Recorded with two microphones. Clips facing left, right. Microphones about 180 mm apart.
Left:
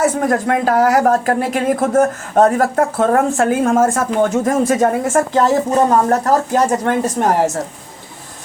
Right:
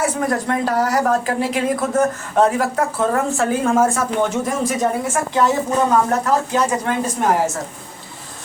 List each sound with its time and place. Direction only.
0.0 s a woman's voice: 50° left (ahead or behind)